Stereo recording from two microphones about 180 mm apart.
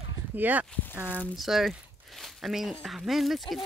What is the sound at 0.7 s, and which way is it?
Speech, 10° left (ahead or behind).